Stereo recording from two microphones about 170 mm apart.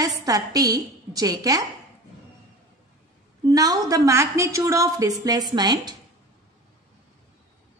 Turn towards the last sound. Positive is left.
turn(degrees=-25)  # may be behind; listen again after turning